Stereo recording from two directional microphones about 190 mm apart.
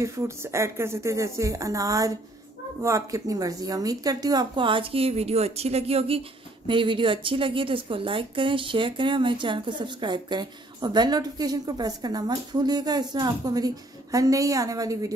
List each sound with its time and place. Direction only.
0.0 s a woman's voice: 15° right (ahead or behind)